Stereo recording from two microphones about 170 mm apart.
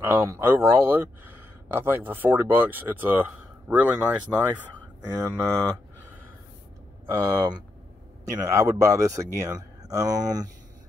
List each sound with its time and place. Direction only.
0.0 s speech: 15° right (ahead or behind)
7.1 s speech: 15° right (ahead or behind)